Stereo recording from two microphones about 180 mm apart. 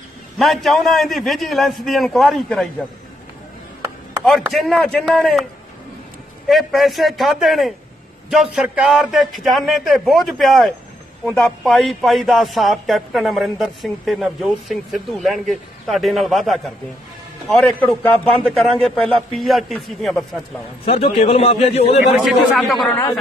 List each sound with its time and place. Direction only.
0.4 s a man's voice: centre (ahead or behind)
4.4 s a man's voice: centre (ahead or behind)
6.5 s a man's voice: centre (ahead or behind)
20.8 s a man's voice: 35° left (ahead or behind)
22.2 s a man's voice: centre (ahead or behind)
22.8 s speech: 15° left (ahead or behind)